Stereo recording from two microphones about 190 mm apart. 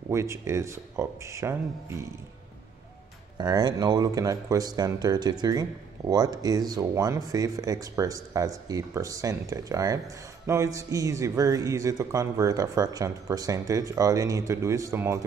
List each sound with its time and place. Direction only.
0.1 s speech: 15° right (ahead or behind)
3.3 s speech: 20° right (ahead or behind)